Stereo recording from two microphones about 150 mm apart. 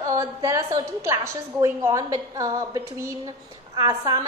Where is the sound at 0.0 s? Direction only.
20° right (ahead or behind).